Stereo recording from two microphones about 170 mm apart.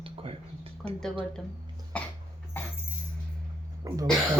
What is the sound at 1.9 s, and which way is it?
Cough, 5° left (ahead or behind).